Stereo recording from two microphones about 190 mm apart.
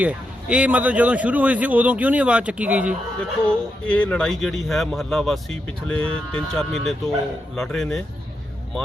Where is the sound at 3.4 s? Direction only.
5° left (ahead or behind).